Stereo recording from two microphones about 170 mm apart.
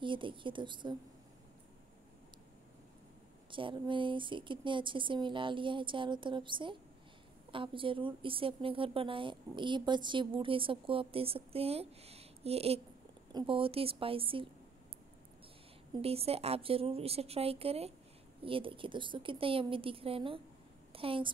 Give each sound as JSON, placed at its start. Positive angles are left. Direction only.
{"t": 0.0, "sound": "speech", "side_deg": -30}
{"t": 3.4, "sound": "speech", "side_deg": -30}
{"t": 15.9, "sound": "a woman's voice", "side_deg": -35}